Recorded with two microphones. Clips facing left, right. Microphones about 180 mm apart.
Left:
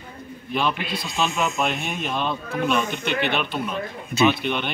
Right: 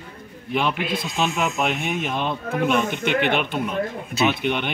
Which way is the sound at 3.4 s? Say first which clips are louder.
Right 2 dB; 15° right (ahead or behind).